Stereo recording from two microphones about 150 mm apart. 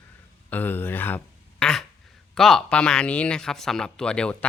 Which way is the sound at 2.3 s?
5° left (ahead or behind).